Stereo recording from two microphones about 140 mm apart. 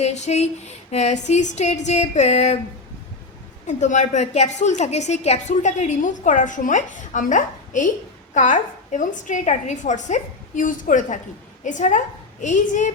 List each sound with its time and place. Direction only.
0.0 s speech: 55° left (ahead or behind)
3.7 s a woman's voice: 60° left (ahead or behind)